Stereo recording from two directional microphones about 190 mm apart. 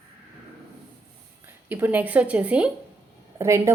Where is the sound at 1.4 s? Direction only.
10° right (ahead or behind).